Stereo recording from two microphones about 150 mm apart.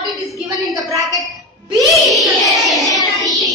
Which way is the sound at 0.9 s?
20° right (ahead or behind).